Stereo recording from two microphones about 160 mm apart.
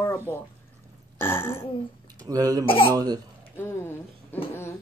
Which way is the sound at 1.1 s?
15° left (ahead or behind).